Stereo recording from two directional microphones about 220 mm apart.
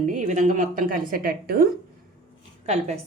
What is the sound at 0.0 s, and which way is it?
A woman's voice, 35° right (ahead or behind).